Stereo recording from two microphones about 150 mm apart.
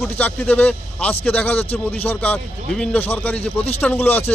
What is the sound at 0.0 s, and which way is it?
Speech, 15° left (ahead or behind).